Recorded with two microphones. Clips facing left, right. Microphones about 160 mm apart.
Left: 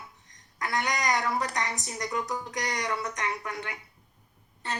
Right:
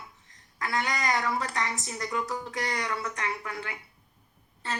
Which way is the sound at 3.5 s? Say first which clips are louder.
Even; 30° right (ahead or behind).